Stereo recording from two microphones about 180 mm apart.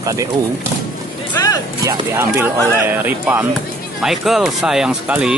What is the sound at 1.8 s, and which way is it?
Speech, 15° right (ahead or behind).